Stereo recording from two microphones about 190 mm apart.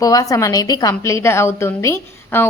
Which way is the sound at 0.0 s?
15° left (ahead or behind).